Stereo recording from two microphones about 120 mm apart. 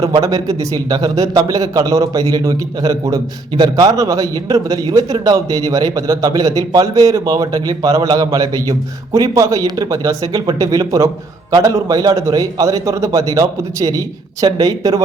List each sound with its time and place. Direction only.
0.0 s a man's voice: 30° right (ahead or behind)